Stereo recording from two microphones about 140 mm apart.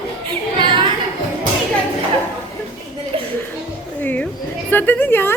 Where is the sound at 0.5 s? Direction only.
35° right (ahead or behind).